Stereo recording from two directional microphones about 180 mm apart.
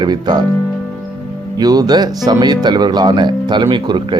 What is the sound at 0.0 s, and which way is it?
Speech, 25° right (ahead or behind).